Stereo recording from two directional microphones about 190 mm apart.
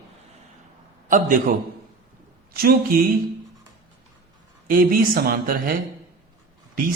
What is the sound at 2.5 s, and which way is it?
Speech, 50° right (ahead or behind).